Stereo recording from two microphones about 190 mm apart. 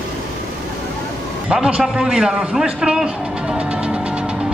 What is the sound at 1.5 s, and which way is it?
A man's voice, 5° right (ahead or behind).